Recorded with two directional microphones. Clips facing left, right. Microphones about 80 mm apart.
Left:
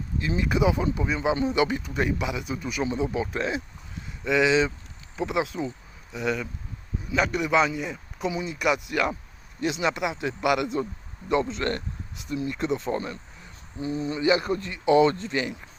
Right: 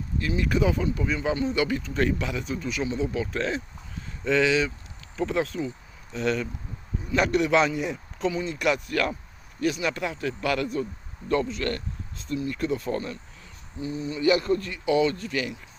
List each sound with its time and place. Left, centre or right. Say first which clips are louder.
0.2 s a man's voice: even; left; by 7.9 s centre
8.2 s speech: right 1 dB; centre